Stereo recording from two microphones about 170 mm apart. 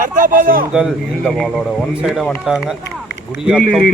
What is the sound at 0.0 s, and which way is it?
Speech, 50° right (ahead or behind).